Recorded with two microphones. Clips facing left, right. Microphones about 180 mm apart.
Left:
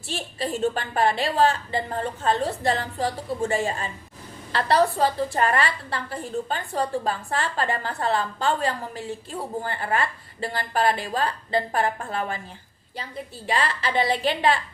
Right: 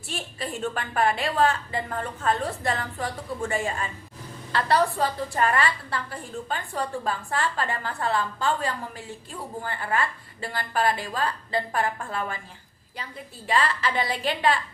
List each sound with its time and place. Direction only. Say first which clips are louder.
0.1 s a woman's voice: left 4 dB; 30° left (ahead or behind)
13.5 s a woman's voice: even; 35° left (ahead or behind)